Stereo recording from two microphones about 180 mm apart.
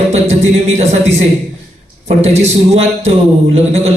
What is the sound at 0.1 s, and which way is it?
Music, 40° right (ahead or behind).